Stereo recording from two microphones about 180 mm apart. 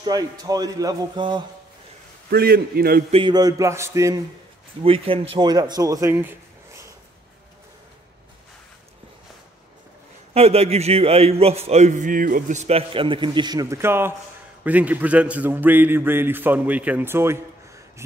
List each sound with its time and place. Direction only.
0.0 s a man's voice: 20° right (ahead or behind)
2.3 s a man's voice: 60° right (ahead or behind)
3.1 s a man's voice: 30° right (ahead or behind)
4.8 s a man's voice: 30° right (ahead or behind); by 6.3 s 15° right (ahead or behind)
10.3 s a man's voice: 35° right (ahead or behind); by 17.4 s 15° right (ahead or behind)